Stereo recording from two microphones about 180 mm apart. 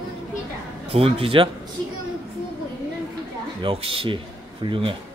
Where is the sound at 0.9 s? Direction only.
35° right (ahead or behind).